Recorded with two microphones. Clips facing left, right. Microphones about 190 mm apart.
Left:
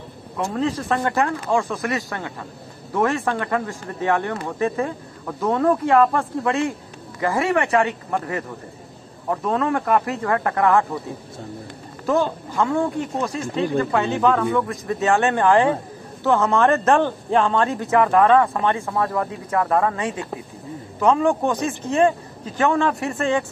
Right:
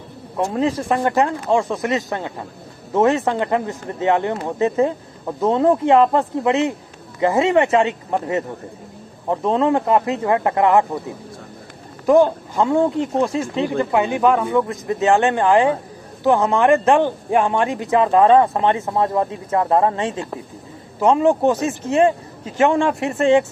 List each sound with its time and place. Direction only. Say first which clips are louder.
0.6 s speech: right 2 dB; 15° right (ahead or behind)
12.1 s speech: right 7 dB; 15° right (ahead or behind)